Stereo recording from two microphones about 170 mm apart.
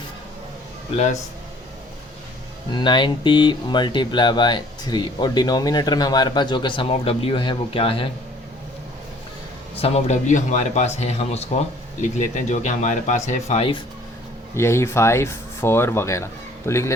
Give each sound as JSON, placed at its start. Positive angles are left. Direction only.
{"t": 2.7, "sound": "speech", "side_deg": 25}
{"t": 9.8, "sound": "speech", "side_deg": 40}
{"t": 14.5, "sound": "speech", "side_deg": 15}